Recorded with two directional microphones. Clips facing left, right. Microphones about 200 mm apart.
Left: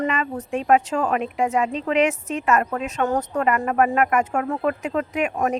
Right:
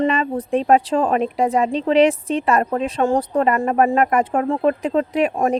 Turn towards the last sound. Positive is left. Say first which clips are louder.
# right 4 dB
turn(degrees=-30)  # may be behind; listen again after turning